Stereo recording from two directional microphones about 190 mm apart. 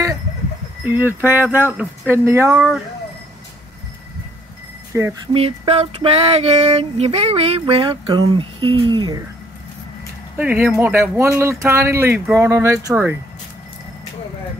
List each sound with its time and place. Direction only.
0.8 s speech: 10° right (ahead or behind)
4.9 s speech: 10° right (ahead or behind)
5.3 s a sound: 30° right (ahead or behind)
10.3 s speech: 10° right (ahead or behind)